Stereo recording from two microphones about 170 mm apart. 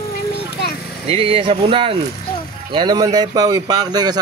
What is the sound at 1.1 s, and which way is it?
Speech, 30° right (ahead or behind).